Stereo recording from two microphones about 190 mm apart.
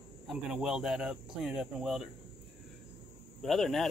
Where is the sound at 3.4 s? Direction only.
Centre (ahead or behind).